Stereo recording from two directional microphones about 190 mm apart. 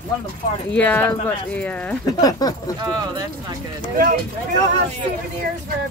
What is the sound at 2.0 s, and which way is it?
Speech, 20° left (ahead or behind).